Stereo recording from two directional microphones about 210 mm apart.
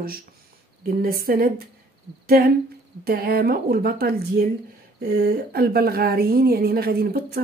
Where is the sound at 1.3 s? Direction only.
45° right (ahead or behind).